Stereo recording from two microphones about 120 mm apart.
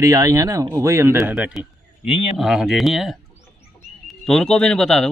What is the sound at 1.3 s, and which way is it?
Speech, 10° right (ahead or behind).